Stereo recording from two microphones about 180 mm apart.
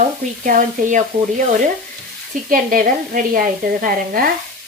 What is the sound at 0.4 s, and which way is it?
Speech, 45° right (ahead or behind).